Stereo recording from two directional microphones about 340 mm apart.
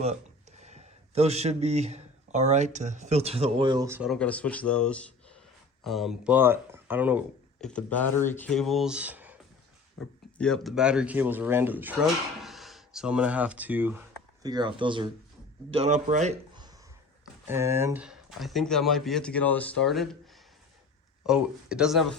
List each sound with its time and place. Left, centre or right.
0.6 s speech: centre
17.4 s speech: centre
21.2 s speech: centre